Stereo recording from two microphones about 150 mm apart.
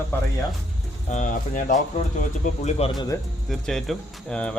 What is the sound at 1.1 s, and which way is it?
Speech, 55° left (ahead or behind).